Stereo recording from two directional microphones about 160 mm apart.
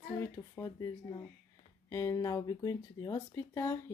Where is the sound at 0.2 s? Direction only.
20° left (ahead or behind).